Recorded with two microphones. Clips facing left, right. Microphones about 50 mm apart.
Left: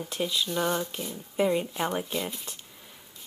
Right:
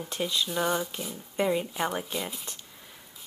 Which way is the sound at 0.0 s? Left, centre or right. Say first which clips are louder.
Even; centre.